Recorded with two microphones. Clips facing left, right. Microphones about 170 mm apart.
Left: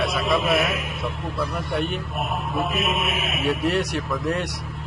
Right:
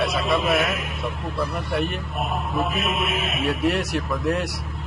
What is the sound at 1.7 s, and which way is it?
Speech, centre (ahead or behind).